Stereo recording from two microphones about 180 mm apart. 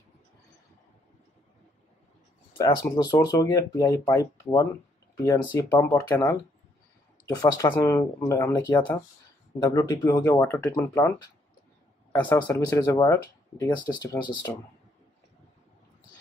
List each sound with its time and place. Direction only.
2.5 s speech: 20° left (ahead or behind)
7.2 s a man's voice: 20° left (ahead or behind)